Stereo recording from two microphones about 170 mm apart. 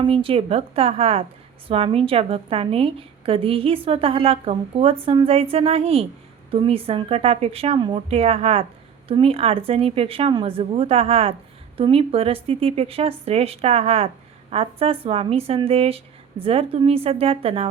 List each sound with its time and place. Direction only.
0.0 s a woman's voice: 30° right (ahead or behind)